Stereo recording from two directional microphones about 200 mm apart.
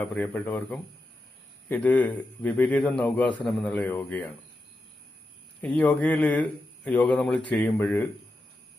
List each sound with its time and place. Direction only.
0.0 s a man's voice: 5° left (ahead or behind)
5.6 s a man's voice: 5° left (ahead or behind)